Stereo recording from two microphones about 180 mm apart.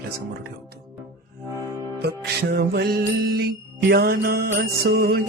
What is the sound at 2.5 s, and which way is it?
Music, 65° right (ahead or behind).